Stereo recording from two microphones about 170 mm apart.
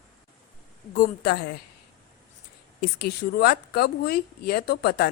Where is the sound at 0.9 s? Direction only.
60° left (ahead or behind).